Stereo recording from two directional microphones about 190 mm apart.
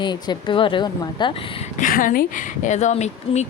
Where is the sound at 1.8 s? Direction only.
45° left (ahead or behind).